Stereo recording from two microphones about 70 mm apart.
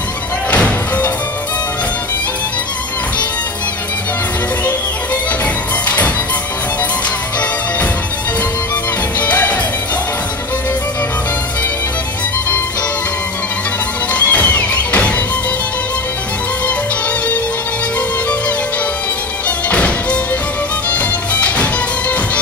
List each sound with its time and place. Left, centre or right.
0.5 s music: left
5.9 s music: left
9.2 s music: left
14.1 s music: left
19.7 s music: centre